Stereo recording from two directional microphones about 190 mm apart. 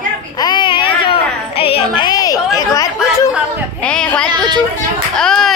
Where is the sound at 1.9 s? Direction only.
20° left (ahead or behind).